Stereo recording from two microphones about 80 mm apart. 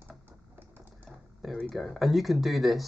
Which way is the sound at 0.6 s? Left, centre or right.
Right.